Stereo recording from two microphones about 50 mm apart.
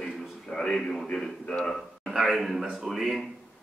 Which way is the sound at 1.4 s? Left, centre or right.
Left.